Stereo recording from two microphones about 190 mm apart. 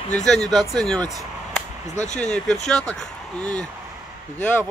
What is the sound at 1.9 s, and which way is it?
Speech, 40° left (ahead or behind).